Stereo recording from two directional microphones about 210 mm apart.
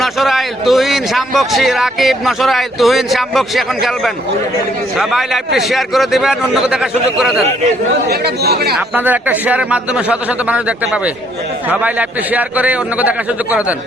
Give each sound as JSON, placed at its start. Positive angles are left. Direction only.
{"t": 0.0, "sound": "a man's voice", "side_deg": 0}
{"t": 8.0, "sound": "speech", "side_deg": -50}
{"t": 8.7, "sound": "a man's voice", "side_deg": -5}